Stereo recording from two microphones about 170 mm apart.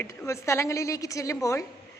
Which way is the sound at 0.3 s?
15° left (ahead or behind).